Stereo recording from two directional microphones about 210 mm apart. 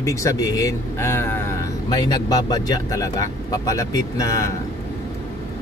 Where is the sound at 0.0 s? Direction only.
15° left (ahead or behind).